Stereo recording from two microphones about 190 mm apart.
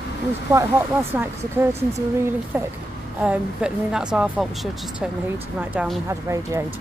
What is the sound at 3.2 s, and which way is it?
A woman's voice, 5° right (ahead or behind).